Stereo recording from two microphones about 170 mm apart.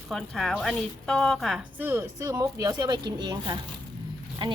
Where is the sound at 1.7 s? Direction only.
15° right (ahead or behind).